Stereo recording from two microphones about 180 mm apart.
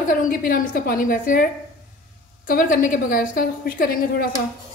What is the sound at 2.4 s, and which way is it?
A woman's voice, 50° left (ahead or behind).